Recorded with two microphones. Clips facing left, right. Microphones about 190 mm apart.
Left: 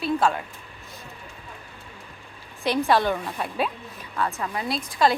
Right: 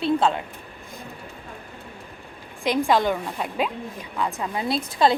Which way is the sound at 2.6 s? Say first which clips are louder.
Right 1 dB; 15° right (ahead or behind).